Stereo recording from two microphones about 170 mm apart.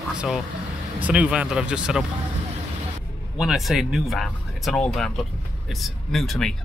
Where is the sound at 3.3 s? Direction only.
Centre (ahead or behind).